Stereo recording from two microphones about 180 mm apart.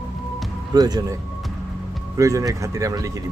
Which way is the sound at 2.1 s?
20° right (ahead or behind).